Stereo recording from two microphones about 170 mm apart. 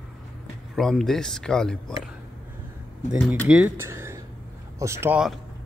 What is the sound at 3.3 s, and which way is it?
Speech, 5° right (ahead or behind).